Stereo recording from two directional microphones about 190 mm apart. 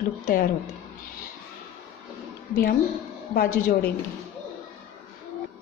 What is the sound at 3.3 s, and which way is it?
Speech, 55° left (ahead or behind).